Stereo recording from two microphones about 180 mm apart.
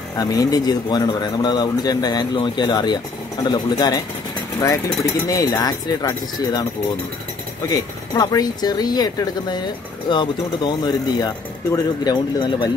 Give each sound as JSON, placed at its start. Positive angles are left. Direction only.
{"t": 0.2, "sound": "a man's voice", "side_deg": 20}
{"t": 5.3, "sound": "a man's voice", "side_deg": 20}
{"t": 7.7, "sound": "a man's voice", "side_deg": 20}